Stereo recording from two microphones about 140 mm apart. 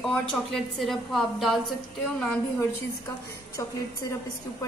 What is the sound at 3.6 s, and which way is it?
Speech, 25° left (ahead or behind).